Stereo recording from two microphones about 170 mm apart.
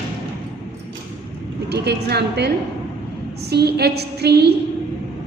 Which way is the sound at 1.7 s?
75° right (ahead or behind).